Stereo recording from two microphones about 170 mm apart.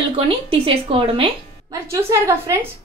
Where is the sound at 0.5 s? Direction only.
35° right (ahead or behind).